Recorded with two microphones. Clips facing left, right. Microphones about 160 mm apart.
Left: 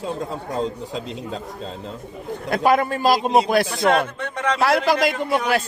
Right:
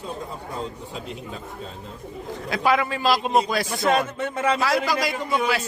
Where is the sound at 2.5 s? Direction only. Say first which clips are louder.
Left 4 dB; 45° left (ahead or behind).